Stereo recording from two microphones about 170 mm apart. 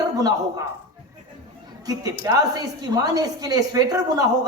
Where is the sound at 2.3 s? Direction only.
20° right (ahead or behind).